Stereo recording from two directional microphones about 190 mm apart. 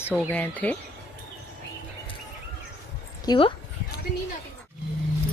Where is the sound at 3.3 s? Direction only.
25° left (ahead or behind).